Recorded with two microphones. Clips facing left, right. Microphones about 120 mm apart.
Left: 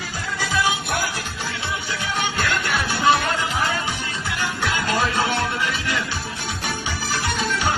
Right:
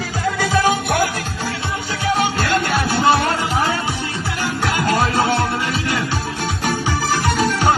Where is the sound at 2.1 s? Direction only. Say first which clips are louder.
Right 4 dB; 40° right (ahead or behind).